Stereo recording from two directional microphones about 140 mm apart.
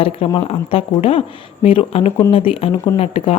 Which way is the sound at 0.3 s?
40° left (ahead or behind).